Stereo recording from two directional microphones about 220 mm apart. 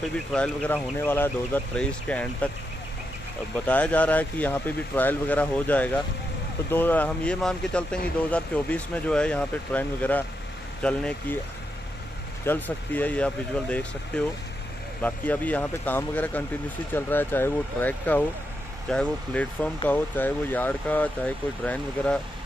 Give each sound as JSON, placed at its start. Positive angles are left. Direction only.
{"t": 0.3, "sound": "speech", "side_deg": 5}
{"t": 3.6, "sound": "speech", "side_deg": 5}
{"t": 12.4, "sound": "speech", "side_deg": 10}